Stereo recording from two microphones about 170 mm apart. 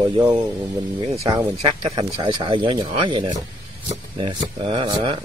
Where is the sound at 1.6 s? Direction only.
35° right (ahead or behind).